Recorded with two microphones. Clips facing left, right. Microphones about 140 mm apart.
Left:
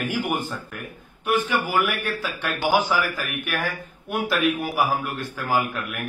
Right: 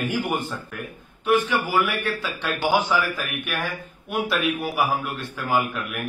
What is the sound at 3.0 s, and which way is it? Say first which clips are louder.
Speech: even; 20° right (ahead or behind).